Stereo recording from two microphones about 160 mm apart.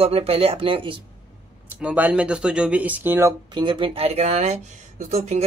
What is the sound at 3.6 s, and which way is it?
Speech, 35° right (ahead or behind).